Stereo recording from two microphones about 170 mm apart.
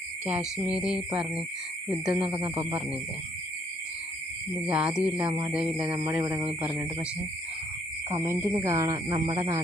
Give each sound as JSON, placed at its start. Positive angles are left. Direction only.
{"t": 0.3, "sound": "cricket", "side_deg": -5}
{"t": 4.6, "sound": "speech", "side_deg": -5}
{"t": 8.1, "sound": "speech", "side_deg": -15}